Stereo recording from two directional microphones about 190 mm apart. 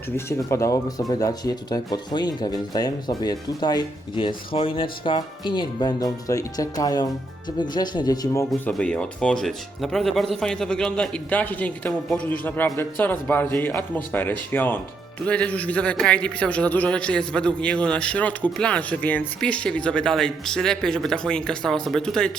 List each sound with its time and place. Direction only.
0.3 s speech: 15° left (ahead or behind)
8.4 s a man's voice: 5° left (ahead or behind)